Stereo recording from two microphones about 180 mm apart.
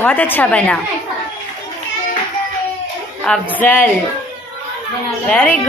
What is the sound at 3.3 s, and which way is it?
Speech, 10° left (ahead or behind).